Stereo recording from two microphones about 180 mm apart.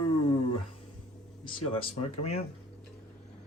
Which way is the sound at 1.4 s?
35° left (ahead or behind).